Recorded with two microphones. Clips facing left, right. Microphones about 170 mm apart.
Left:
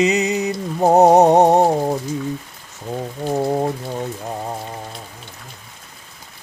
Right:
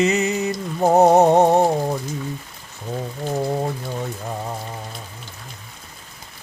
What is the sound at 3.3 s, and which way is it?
Music, 25° left (ahead or behind).